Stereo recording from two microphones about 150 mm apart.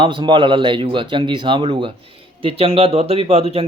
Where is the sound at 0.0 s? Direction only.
35° right (ahead or behind).